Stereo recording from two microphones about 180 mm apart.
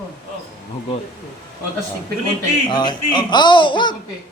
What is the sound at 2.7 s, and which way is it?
Speech, 25° left (ahead or behind).